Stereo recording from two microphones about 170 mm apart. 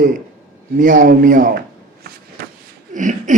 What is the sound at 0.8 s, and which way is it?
Speech, 50° right (ahead or behind).